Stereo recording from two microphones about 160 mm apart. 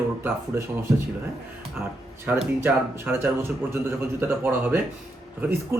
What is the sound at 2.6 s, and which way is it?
Speech, 15° right (ahead or behind).